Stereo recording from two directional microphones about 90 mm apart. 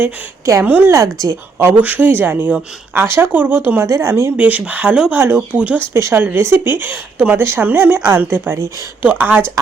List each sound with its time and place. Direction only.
0.6 s speech: 20° right (ahead or behind)
0.9 s speech: 35° right (ahead or behind)
1.6 s speech: 20° right (ahead or behind)
3.8 s speech: 35° right (ahead or behind)
4.4 s speech: 15° right (ahead or behind)
5.1 s speech: 25° right (ahead or behind)
5.5 s speech: 15° right (ahead or behind)
5.9 s speech: 30° right (ahead or behind)